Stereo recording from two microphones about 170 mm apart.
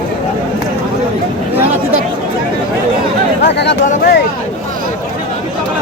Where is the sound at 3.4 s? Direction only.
85° left.